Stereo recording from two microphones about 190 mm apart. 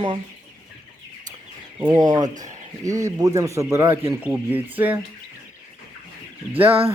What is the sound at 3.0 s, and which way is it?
Speech, 20° right (ahead or behind).